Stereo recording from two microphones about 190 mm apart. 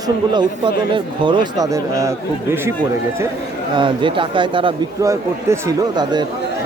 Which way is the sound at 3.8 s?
25° right (ahead or behind).